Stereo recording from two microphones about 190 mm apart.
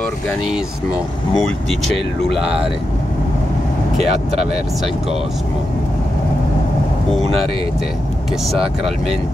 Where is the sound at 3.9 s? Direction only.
35° right (ahead or behind).